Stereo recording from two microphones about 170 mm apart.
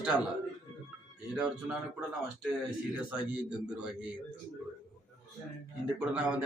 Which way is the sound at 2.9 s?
5° right (ahead or behind).